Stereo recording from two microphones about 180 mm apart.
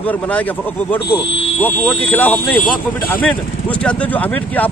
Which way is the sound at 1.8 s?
10° left (ahead or behind).